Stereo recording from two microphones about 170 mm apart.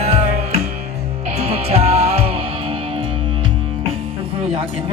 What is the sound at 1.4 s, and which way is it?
Music, 35° right (ahead or behind).